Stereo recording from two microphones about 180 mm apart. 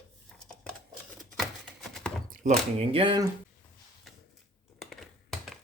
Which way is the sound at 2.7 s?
30° right (ahead or behind).